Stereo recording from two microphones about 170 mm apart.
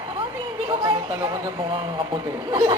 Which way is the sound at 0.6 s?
25° right (ahead or behind).